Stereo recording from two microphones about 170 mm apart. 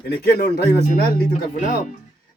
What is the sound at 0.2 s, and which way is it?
Speech, 70° left (ahead or behind).